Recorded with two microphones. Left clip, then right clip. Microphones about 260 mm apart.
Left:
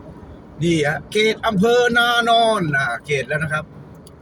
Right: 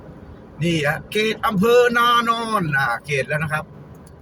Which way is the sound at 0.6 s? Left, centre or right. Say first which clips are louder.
Left 2 dB; centre.